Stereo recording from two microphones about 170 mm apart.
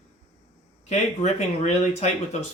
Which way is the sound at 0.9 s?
40° left (ahead or behind).